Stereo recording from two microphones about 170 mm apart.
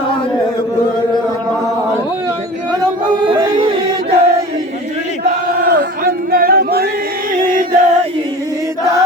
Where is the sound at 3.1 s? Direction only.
30° right (ahead or behind).